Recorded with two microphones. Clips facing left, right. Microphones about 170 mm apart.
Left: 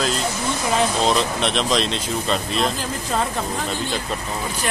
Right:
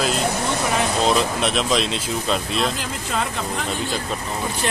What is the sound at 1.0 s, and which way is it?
Speech, 5° right (ahead or behind).